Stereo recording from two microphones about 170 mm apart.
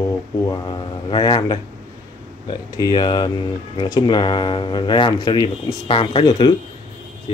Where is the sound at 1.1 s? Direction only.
25° left (ahead or behind).